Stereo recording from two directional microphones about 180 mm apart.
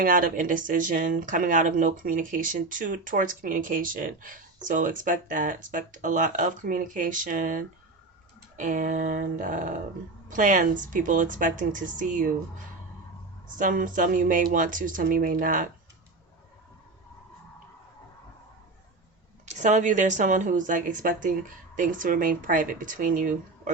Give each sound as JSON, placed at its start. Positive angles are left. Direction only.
{"t": 0.0, "sound": "speech", "side_deg": -50}
{"t": 13.6, "sound": "speech", "side_deg": -50}
{"t": 19.5, "sound": "speech", "side_deg": -40}